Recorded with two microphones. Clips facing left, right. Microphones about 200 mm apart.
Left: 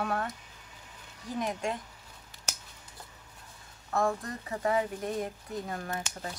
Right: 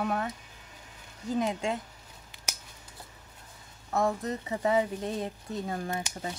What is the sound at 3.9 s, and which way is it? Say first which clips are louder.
Speech: right 2 dB; 20° right (ahead or behind).